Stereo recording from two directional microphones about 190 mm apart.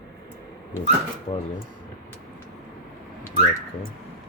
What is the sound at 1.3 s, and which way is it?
Speech, 30° left (ahead or behind).